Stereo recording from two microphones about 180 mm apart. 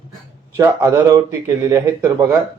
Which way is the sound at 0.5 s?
20° right (ahead or behind).